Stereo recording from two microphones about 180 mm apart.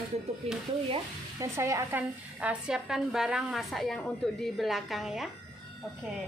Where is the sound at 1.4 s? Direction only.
15° right (ahead or behind); by 5.3 s centre (ahead or behind).